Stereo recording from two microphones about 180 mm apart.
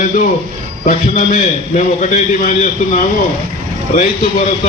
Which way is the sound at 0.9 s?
40° left (ahead or behind).